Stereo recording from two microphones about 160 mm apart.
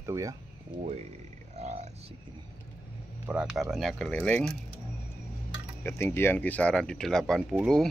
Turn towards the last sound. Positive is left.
turn(degrees=0)  # may be behind; listen again after turning